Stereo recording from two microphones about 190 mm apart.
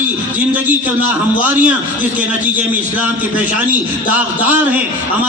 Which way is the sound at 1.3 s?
10° right (ahead or behind).